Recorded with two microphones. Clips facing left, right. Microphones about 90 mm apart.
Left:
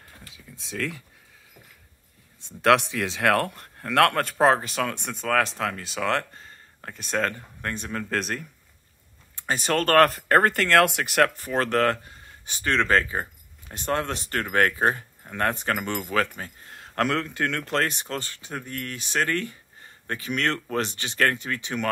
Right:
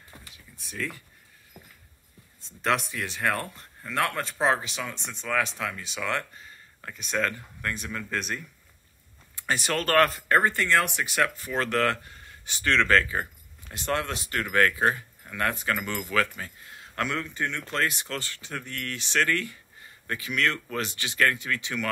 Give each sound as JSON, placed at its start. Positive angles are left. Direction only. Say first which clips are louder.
{"t": 0.6, "sound": "speech", "louder": "left 4 dB", "side_deg": 90}
{"t": 2.4, "sound": "speech", "louder": "left 7 dB", "side_deg": 75}
{"t": 8.1, "sound": "speech", "louder": "left 3 dB", "side_deg": 55}
{"t": 9.4, "sound": "speech", "louder": "left 3 dB", "side_deg": 30}
{"t": 14.1, "sound": "speech", "louder": "left 1 dB", "side_deg": 40}
{"t": 17.6, "sound": "speech", "louder": "left 5 dB", "side_deg": 50}
{"t": 17.9, "sound": "speech", "louder": "left 2 dB", "side_deg": 30}